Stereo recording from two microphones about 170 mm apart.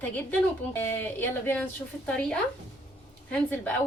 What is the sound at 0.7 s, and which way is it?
A woman's voice, 15° left (ahead or behind).